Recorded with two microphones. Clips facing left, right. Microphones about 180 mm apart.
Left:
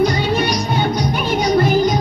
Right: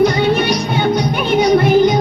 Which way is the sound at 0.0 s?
60° right (ahead or behind).